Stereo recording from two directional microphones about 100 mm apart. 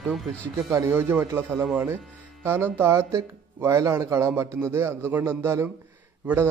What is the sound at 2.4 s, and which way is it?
Speech, 20° right (ahead or behind).